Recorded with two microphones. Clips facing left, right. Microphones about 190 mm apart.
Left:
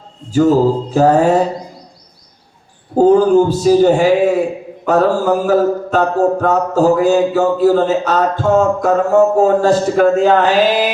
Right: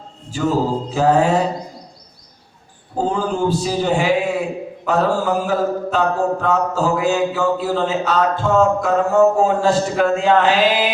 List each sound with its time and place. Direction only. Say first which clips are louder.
0.3 s mantra: left 8 dB; 40° left (ahead or behind)
3.0 s mantra: left 10 dB; 40° left (ahead or behind)